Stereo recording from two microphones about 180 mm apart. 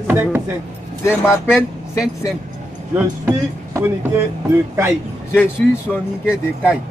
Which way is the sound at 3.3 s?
10° right (ahead or behind).